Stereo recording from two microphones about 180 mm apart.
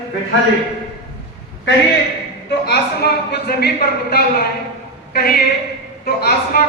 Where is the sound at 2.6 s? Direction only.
65° left (ahead or behind).